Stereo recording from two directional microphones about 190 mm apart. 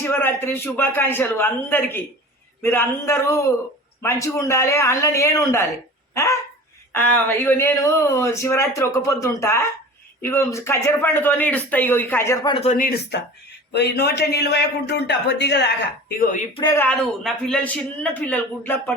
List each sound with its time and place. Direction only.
0.0 s speech: 10° left (ahead or behind)
6.9 s speech: 10° left (ahead or behind)
12.5 s a man's voice: 40° left (ahead or behind)
16.6 s speech: 15° left (ahead or behind)